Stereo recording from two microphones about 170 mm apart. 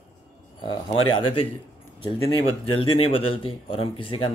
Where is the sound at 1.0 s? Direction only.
30° left (ahead or behind).